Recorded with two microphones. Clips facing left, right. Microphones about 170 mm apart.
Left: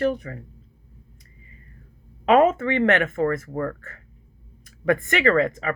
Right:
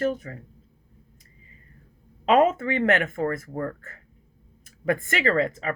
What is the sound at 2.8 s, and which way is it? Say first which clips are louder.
Speech: left 2 dB; 50° left (ahead or behind).